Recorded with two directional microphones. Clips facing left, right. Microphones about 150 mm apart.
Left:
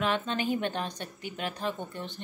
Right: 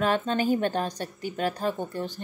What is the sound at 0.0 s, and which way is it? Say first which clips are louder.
A woman's voice: right 5 dB; 40° right (ahead or behind).